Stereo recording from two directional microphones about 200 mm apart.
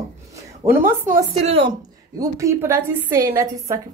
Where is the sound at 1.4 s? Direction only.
30° right (ahead or behind).